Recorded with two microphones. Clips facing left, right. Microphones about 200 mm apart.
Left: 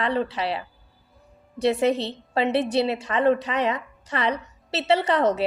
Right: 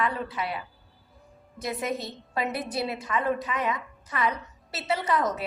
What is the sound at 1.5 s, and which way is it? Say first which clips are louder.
Speech: left 10 dB; 75° left (ahead or behind).